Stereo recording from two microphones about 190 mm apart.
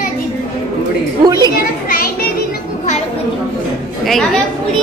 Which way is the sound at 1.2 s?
20° right (ahead or behind).